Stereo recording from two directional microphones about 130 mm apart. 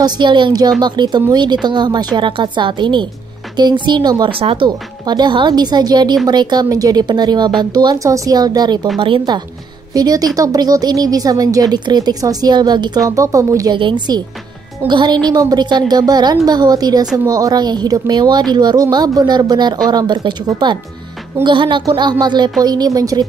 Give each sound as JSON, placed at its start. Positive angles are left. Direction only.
{"t": 0.0, "sound": "speech", "side_deg": -35}
{"t": 13.7, "sound": "speech", "side_deg": -40}